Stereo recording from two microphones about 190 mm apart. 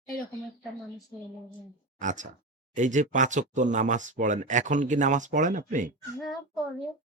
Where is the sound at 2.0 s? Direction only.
40° right (ahead or behind).